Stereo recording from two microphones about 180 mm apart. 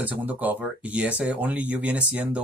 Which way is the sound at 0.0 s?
10° right (ahead or behind).